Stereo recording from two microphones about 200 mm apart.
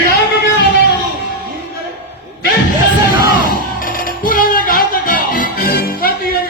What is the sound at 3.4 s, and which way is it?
Music, 45° left (ahead or behind).